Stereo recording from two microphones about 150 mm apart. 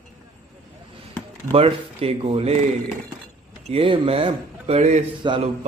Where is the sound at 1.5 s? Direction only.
40° right (ahead or behind).